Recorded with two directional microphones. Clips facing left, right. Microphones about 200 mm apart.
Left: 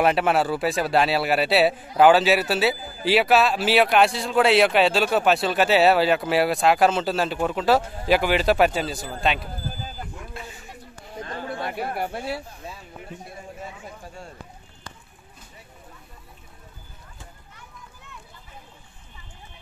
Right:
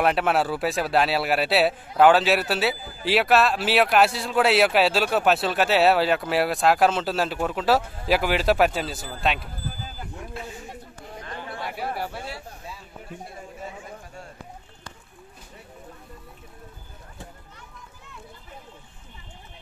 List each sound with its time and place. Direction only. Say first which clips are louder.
0.0 s a man's voice: left 2 dB; centre (ahead or behind)
11.6 s speech: left 1 dB; 55° left (ahead or behind)